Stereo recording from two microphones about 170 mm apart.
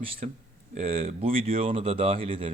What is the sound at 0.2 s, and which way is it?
Speech, 40° right (ahead or behind).